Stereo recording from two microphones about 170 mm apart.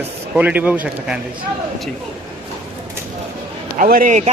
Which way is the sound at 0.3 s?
10° right (ahead or behind).